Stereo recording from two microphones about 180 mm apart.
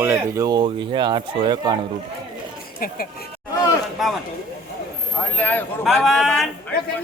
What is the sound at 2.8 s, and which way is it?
Speech, 55° left (ahead or behind).